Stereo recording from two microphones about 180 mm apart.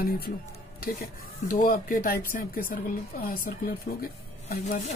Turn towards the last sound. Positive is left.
turn(degrees=45)  # may be behind; listen again after turning